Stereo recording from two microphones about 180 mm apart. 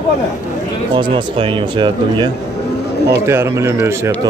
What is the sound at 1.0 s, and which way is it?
Speech, 25° right (ahead or behind).